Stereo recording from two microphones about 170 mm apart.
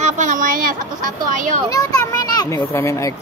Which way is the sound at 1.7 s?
20° left (ahead or behind).